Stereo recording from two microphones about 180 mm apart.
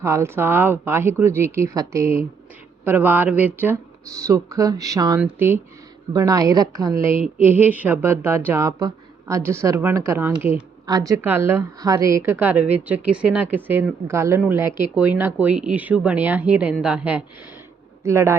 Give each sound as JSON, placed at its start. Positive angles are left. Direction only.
{"t": 0.0, "sound": "a woman's voice", "side_deg": -15}